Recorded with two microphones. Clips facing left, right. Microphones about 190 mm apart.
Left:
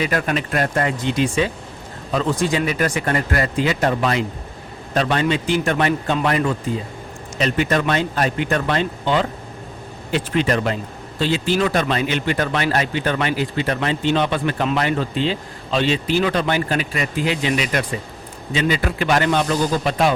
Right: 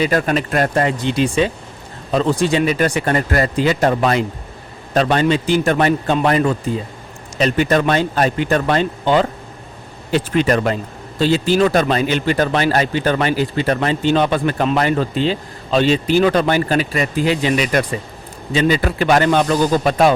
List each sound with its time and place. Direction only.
0.0 s speech: 30° right (ahead or behind)
0.8 s a man's voice: 30° right (ahead or behind); by 20.1 s 45° right (ahead or behind)